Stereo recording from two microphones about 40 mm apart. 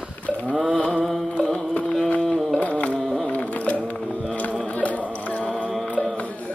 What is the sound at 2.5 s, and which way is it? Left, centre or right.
Carnatic music, left.